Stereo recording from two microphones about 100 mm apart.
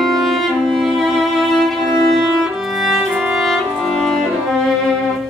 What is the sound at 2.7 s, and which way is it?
Violin, centre (ahead or behind).